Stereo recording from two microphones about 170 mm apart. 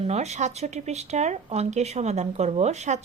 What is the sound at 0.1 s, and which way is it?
Speech, 40° right (ahead or behind).